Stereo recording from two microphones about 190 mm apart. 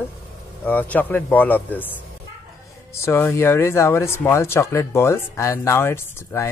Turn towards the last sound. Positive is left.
turn(degrees=15)  # may be behind; listen again after turning